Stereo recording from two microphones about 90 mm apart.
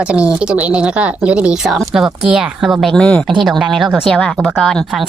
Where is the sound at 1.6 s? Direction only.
Centre (ahead or behind).